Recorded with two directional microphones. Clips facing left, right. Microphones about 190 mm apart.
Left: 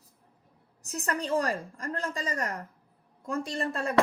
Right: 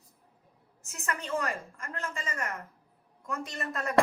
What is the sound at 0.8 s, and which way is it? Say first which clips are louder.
A woman's voice: left 5 dB; 35° left (ahead or behind).